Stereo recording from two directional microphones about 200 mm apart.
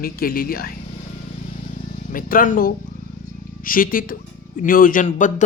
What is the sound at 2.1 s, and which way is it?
Speech, 45° left (ahead or behind).